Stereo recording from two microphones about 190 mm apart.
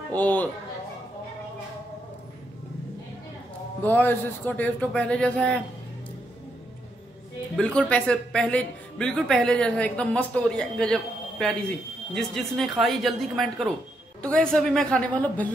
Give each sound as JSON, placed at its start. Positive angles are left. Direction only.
{"t": 0.1, "sound": "speech", "side_deg": 10}
{"t": 3.8, "sound": "speech", "side_deg": 10}
{"t": 7.5, "sound": "a woman's voice", "side_deg": 5}